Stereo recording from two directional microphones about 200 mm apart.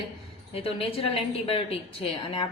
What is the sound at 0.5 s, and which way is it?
Speech, 30° left (ahead or behind).